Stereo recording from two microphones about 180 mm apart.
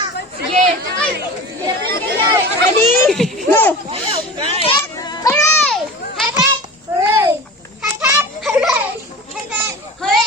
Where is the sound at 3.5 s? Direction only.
10° left (ahead or behind).